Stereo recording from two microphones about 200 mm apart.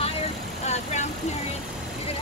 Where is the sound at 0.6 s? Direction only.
35° left (ahead or behind).